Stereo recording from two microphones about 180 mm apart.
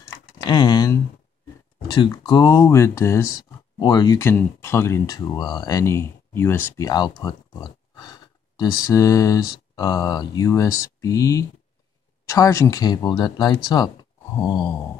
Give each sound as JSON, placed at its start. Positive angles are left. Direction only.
{"t": 0.5, "sound": "speech", "side_deg": 20}
{"t": 4.2, "sound": "speech", "side_deg": 15}
{"t": 6.9, "sound": "speech", "side_deg": 25}